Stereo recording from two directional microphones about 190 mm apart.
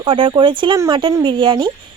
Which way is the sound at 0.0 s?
25° right (ahead or behind).